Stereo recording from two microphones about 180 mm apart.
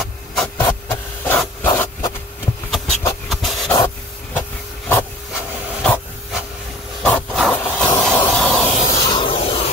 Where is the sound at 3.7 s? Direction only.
15° left (ahead or behind).